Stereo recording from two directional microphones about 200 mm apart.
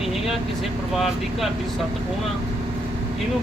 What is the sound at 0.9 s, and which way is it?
Speech, centre (ahead or behind).